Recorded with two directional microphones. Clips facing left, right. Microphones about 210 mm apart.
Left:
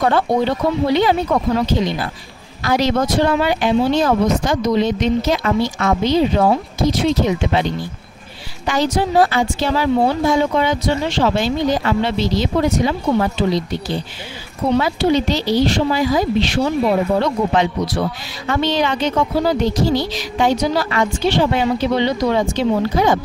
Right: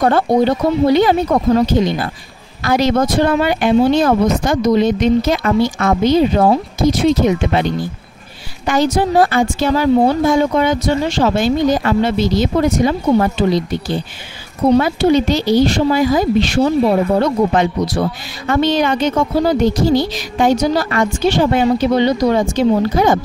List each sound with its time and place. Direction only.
0.0 s speech: 45° right (ahead or behind)
8.6 s speech: 50° right (ahead or behind)
14.8 s speech: 50° right (ahead or behind)